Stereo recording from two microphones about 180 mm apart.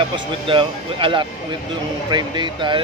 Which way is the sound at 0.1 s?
25° right (ahead or behind).